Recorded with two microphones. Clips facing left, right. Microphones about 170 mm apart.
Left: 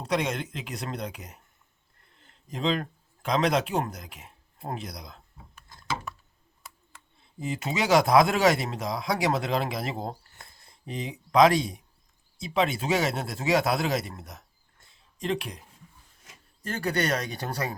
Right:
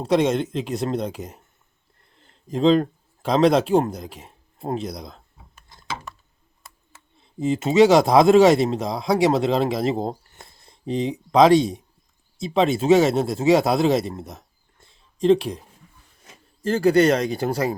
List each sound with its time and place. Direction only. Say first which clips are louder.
0.0 s speech: right 9 dB; 25° right (ahead or behind)
7.3 s speech: right 13 dB; 25° right (ahead or behind)